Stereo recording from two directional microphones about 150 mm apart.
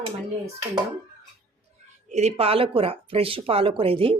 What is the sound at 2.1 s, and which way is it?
Speech, 45° right (ahead or behind).